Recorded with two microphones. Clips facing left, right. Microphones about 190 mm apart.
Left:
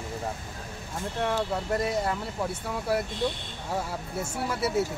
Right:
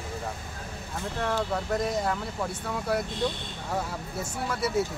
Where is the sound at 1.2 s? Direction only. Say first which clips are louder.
Left 1 dB; 10° left (ahead or behind).